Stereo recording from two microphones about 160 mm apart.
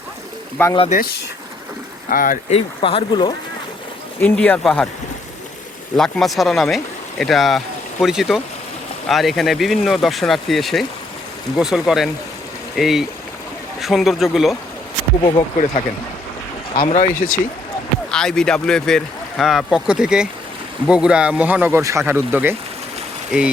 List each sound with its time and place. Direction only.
0.9 s speech: 60° left (ahead or behind)
2.5 s speech: 40° left (ahead or behind)
4.2 s speech: 10° left (ahead or behind)
6.0 s speech: centre (ahead or behind)
15.2 s speech: 30° left (ahead or behind)
16.9 s speech: 55° left (ahead or behind)
18.1 s speech: 5° left (ahead or behind); by 22.5 s 10° right (ahead or behind)